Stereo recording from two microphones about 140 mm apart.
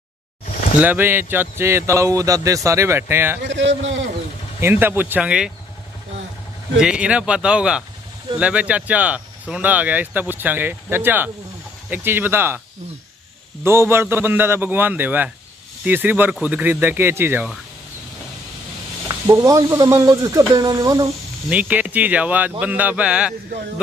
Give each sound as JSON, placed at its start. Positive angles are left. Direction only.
{"t": 0.7, "sound": "speech", "side_deg": -15}
{"t": 4.6, "sound": "speech", "side_deg": -15}
{"t": 6.8, "sound": "speech", "side_deg": -5}
{"t": 13.7, "sound": "speech", "side_deg": -20}
{"t": 19.0, "sound": "speech", "side_deg": -20}
{"t": 21.5, "sound": "speech", "side_deg": -10}